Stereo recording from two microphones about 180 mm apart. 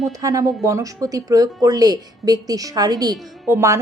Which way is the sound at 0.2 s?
20° right (ahead or behind).